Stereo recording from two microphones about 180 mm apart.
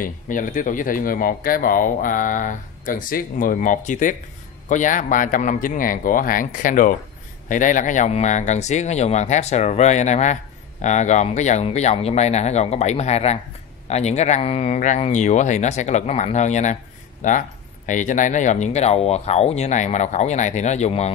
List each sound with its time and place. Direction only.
0.0 s speech: 50° left (ahead or behind)